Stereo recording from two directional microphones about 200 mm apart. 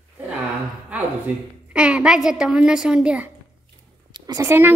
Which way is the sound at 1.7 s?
5° right (ahead or behind).